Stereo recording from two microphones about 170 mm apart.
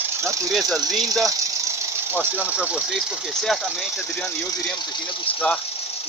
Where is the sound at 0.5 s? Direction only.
Centre (ahead or behind).